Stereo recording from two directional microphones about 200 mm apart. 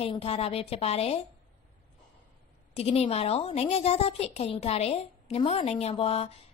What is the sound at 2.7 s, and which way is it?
A woman's voice, 30° left (ahead or behind).